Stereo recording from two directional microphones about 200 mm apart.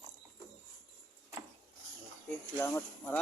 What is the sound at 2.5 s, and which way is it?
Speech, 10° left (ahead or behind).